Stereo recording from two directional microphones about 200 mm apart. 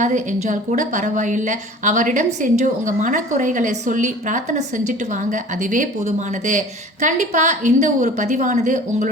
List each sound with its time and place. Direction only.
0.0 s a woman's voice: 40° right (ahead or behind)